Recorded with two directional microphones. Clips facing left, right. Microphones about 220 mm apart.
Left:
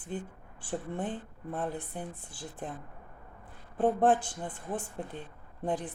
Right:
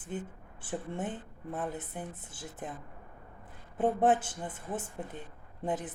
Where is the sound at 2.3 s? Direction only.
20° right (ahead or behind).